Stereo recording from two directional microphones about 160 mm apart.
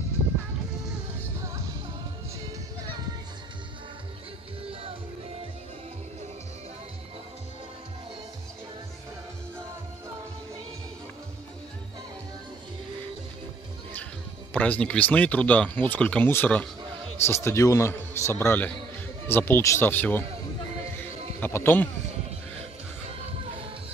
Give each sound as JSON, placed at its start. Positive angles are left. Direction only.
{"t": 14.5, "sound": "speech", "side_deg": 10}
{"t": 21.4, "sound": "speech", "side_deg": 15}